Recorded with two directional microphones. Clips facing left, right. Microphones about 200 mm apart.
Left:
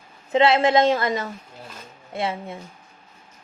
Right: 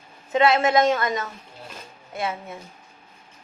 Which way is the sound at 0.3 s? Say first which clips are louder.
Left 2 dB; 30° left (ahead or behind).